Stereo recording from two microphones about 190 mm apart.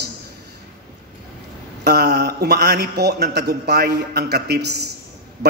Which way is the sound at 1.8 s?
60° right (ahead or behind).